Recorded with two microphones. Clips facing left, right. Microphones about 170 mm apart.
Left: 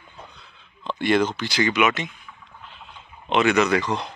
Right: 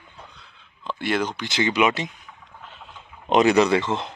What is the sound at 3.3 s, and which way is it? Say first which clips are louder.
Speech: right 2 dB; 35° right (ahead or behind).